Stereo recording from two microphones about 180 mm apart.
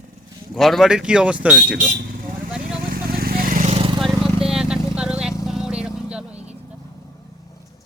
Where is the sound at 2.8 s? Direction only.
55° right (ahead or behind); by 3.9 s 35° right (ahead or behind).